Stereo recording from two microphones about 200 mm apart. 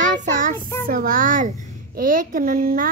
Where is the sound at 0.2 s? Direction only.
40° right (ahead or behind).